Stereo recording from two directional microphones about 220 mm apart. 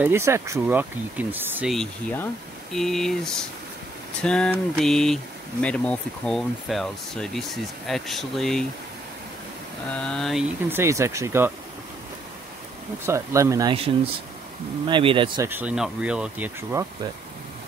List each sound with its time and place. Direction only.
0.0 s speech: 10° right (ahead or behind)
9.9 s speech: 5° left (ahead or behind)
10.7 s speech: 10° right (ahead or behind)
13.0 s speech: 10° right (ahead or behind)
14.9 s speech: 20° right (ahead or behind)
15.4 s speech: 5° right (ahead or behind)